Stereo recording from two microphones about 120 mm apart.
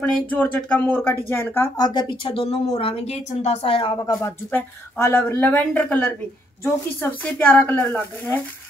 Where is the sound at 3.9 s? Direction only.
25° left (ahead or behind).